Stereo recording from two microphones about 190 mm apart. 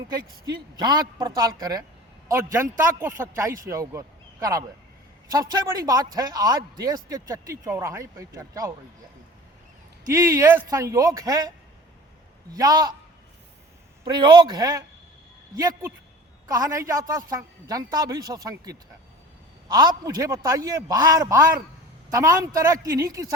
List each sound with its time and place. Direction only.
0.1 s a man's voice: 20° right (ahead or behind)
10.1 s a man's voice: 15° right (ahead or behind)
12.5 s speech: 20° right (ahead or behind)
14.0 s a man's voice: 25° right (ahead or behind)